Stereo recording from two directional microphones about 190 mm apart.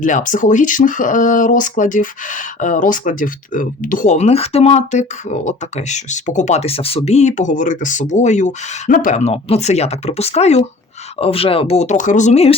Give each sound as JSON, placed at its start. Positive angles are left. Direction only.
{"t": 0.0, "sound": "speech", "side_deg": 45}